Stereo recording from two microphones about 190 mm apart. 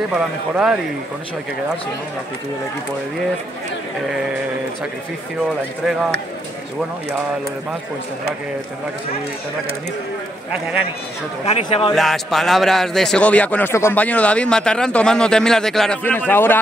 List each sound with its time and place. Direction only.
0.1 s a man's voice: 5° right (ahead or behind)
11.4 s speech: 30° left (ahead or behind)
11.9 s a man's voice: centre (ahead or behind)